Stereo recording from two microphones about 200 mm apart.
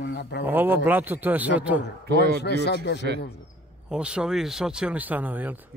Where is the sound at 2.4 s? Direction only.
55° left (ahead or behind).